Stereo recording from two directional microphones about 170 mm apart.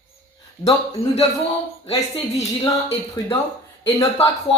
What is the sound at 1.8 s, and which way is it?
Speech, 35° left (ahead or behind).